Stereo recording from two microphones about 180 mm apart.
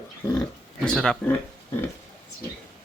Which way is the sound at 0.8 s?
5° left (ahead or behind).